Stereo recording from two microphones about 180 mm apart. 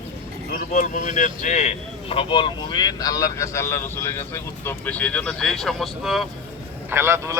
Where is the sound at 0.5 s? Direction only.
45° left (ahead or behind); by 6.2 s centre (ahead or behind).